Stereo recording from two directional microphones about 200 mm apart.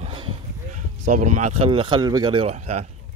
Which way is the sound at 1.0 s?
40° right (ahead or behind).